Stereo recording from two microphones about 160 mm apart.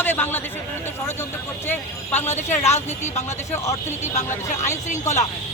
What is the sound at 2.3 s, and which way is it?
Speech, 45° left (ahead or behind).